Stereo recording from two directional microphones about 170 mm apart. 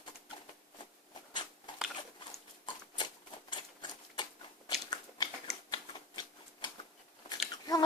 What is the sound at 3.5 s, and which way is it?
Typewriter, 25° left (ahead or behind).